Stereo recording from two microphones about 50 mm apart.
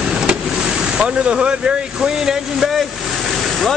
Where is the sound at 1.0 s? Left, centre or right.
Centre.